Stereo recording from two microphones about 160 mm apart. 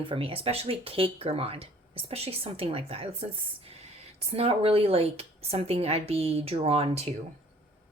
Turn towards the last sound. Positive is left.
turn(degrees=-40)  # may be behind; listen again after turning